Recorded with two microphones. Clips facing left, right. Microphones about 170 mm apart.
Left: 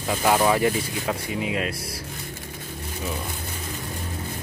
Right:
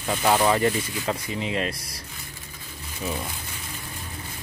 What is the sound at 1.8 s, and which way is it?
Speech, 25° left (ahead or behind).